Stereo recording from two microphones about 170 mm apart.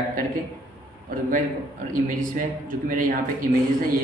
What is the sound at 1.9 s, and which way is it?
A man's voice, 50° right (ahead or behind).